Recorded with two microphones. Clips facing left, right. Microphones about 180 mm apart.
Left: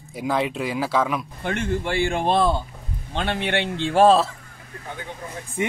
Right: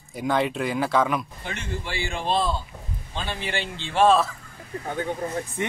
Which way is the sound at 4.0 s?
35° left (ahead or behind).